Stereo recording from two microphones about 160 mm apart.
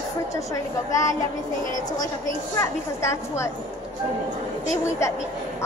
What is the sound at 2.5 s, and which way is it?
Speech, 15° left (ahead or behind).